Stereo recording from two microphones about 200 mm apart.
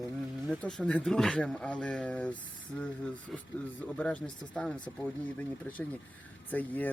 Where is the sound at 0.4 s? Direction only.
5° left (ahead or behind).